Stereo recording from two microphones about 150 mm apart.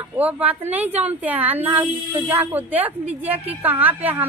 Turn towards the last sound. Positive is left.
turn(degrees=-10)  # may be behind; listen again after turning